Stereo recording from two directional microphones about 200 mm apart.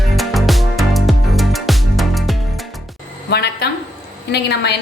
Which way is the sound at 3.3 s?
55° left (ahead or behind).